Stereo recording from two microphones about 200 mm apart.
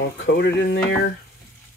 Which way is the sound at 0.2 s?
60° left (ahead or behind).